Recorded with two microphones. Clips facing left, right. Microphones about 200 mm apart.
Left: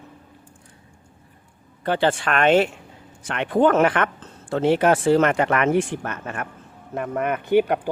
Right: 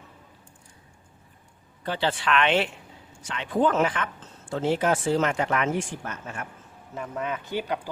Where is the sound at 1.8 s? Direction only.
50° left (ahead or behind).